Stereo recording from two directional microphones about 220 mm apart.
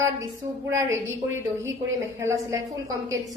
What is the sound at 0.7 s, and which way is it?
A woman's voice, 10° right (ahead or behind).